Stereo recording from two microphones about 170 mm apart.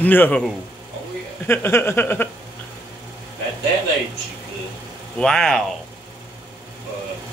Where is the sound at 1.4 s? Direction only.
15° left (ahead or behind).